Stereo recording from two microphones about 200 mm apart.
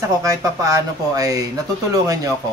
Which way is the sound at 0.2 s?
15° right (ahead or behind).